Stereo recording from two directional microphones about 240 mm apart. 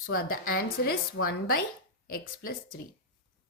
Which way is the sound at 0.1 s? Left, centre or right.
Left.